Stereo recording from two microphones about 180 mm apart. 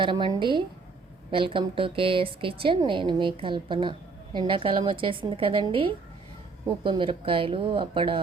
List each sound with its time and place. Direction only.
0.0 s a woman's voice: 25° right (ahead or behind)
6.8 s a woman's voice: 25° right (ahead or behind)